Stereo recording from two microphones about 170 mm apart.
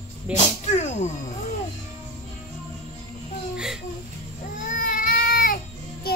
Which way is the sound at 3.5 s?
5° right (ahead or behind).